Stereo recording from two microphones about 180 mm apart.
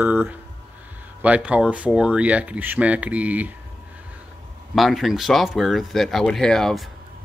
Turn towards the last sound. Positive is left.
turn(degrees=0)  # may be behind; listen again after turning